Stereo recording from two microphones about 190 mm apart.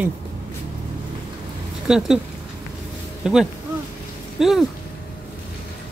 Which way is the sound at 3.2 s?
5° right (ahead or behind).